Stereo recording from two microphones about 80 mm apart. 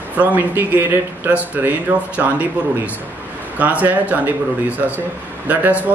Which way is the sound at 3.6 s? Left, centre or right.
Centre.